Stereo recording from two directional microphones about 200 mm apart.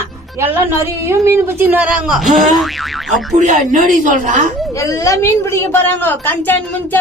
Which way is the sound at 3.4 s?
40° right (ahead or behind).